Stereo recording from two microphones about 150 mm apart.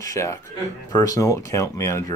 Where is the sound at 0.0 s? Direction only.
20° left (ahead or behind).